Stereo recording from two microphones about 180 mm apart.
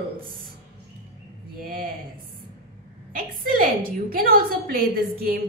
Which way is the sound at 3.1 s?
50° right (ahead or behind).